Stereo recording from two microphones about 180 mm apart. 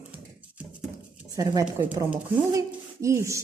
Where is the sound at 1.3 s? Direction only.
20° right (ahead or behind).